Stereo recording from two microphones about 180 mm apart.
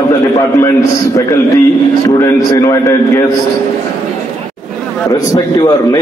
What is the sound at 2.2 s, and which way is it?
A man's voice, 15° left (ahead or behind).